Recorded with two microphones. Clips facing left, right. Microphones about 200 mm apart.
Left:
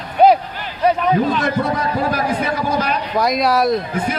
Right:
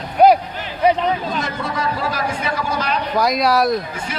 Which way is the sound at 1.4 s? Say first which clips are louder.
Left 5 dB; 60° left (ahead or behind).